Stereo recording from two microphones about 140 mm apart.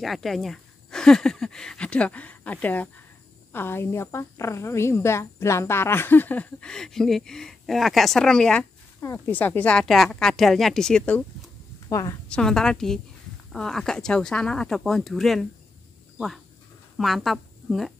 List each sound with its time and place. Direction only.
0.0 s a woman's voice: centre (ahead or behind)
9.0 s speech: 15° left (ahead or behind)
11.9 s a woman's voice: 25° left (ahead or behind)
12.3 s speech: 5° left (ahead or behind)
16.9 s a woman's voice: centre (ahead or behind)